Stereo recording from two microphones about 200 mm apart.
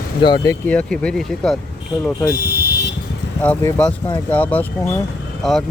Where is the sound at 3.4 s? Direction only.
5° left (ahead or behind).